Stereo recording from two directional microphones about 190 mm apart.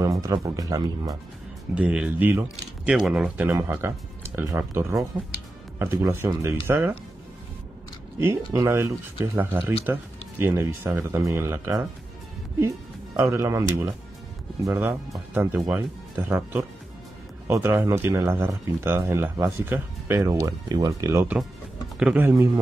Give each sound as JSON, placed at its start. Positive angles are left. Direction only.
{"t": 0.2, "sound": "speech", "side_deg": -20}
{"t": 1.8, "sound": "speech", "side_deg": -5}
{"t": 8.2, "sound": "speech", "side_deg": -15}
{"t": 17.5, "sound": "speech", "side_deg": -15}